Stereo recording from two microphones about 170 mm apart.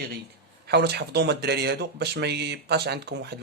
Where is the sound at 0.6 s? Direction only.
75° right (ahead or behind).